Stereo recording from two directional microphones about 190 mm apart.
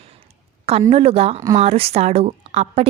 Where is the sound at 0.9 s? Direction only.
30° right (ahead or behind).